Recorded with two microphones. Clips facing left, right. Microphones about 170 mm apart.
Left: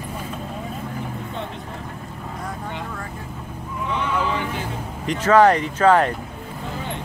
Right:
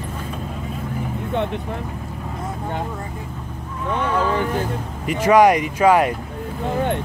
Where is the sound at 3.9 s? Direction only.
50° right (ahead or behind).